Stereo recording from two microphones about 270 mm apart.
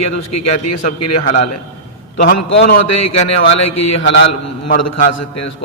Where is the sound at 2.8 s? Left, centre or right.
Left.